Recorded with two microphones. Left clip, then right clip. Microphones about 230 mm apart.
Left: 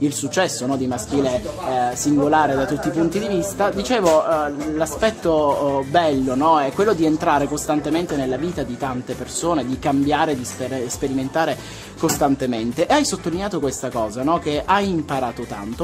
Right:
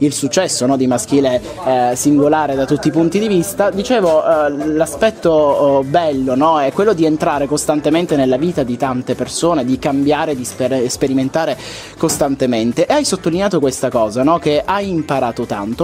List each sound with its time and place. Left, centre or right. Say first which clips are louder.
0.0 s speech: right 5 dB; right